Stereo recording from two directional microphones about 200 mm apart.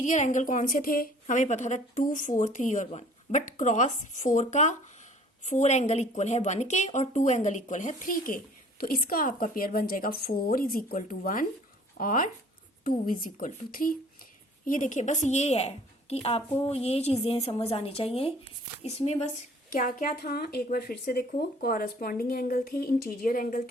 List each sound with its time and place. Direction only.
0.0 s a woman's voice: 40° left (ahead or behind)
19.7 s speech: 45° left (ahead or behind)